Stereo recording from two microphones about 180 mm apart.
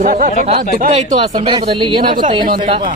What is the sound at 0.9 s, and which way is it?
A man's voice, 35° right (ahead or behind).